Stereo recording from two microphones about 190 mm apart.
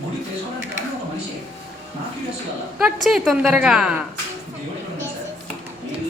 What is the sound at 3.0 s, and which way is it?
Speech, centre (ahead or behind).